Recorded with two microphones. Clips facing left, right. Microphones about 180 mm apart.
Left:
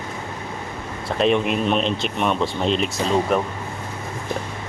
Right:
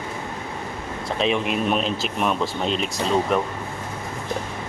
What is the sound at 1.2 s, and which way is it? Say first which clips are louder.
Speech: left 4 dB; centre (ahead or behind).